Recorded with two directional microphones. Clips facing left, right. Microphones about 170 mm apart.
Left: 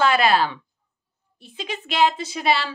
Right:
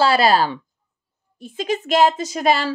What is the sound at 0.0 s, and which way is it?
A woman's voice, 35° right (ahead or behind).